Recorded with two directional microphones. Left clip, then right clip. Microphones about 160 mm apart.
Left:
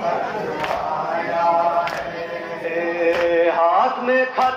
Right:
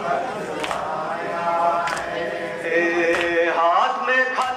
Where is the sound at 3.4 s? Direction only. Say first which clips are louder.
Left 1 dB; 25° left (ahead or behind).